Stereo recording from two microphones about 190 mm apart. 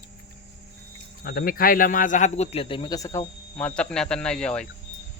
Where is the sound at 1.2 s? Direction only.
50° left (ahead or behind); by 4.7 s 5° left (ahead or behind).